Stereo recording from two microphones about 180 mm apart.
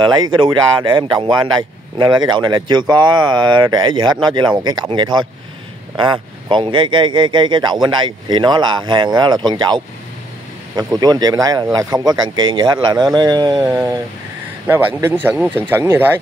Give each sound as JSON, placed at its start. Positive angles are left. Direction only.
{"t": 0.0, "sound": "speech", "side_deg": -25}
{"t": 6.5, "sound": "speech", "side_deg": -25}
{"t": 10.8, "sound": "speech", "side_deg": -20}